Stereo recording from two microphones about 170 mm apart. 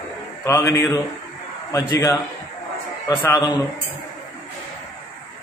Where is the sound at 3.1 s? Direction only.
20° left (ahead or behind).